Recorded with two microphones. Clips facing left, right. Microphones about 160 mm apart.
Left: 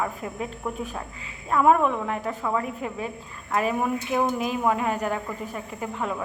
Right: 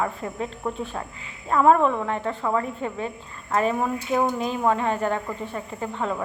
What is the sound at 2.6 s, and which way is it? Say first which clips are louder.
Speech: right 2 dB; 30° right (ahead or behind).